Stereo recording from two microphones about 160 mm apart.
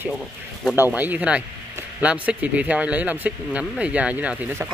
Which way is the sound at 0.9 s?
10° right (ahead or behind).